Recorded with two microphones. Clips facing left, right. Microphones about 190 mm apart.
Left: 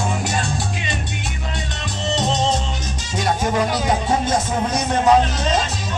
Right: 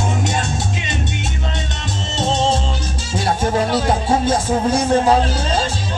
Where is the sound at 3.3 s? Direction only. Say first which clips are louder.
Right 2 dB; 30° right (ahead or behind).